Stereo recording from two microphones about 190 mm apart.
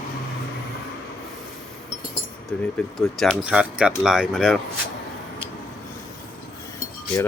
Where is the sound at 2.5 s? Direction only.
5° left (ahead or behind).